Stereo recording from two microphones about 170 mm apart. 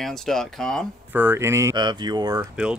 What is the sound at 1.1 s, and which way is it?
Speech, 10° right (ahead or behind).